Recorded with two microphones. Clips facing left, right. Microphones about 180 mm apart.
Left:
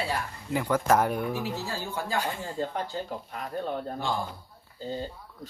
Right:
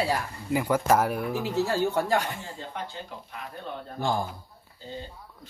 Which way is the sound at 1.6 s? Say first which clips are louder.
Right 8 dB; 70° right (ahead or behind).